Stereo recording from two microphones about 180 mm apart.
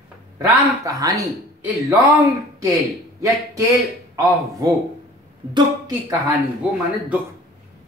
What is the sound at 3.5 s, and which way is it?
Speech, 20° right (ahead or behind).